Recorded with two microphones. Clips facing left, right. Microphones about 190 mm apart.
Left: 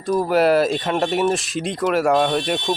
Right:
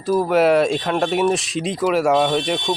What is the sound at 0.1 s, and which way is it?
Speech, centre (ahead or behind).